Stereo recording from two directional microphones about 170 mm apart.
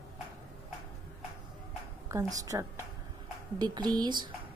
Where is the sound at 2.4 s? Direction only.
20° right (ahead or behind).